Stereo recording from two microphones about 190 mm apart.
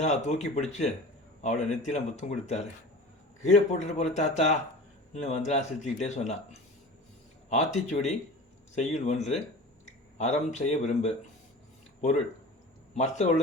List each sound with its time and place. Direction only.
0.0 s speech: 35° left (ahead or behind)
12.9 s speech: 35° left (ahead or behind)